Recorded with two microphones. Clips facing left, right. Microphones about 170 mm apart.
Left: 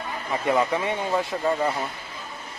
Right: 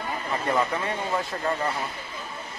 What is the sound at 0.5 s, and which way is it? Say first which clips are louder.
Speech: left 4 dB; 15° left (ahead or behind).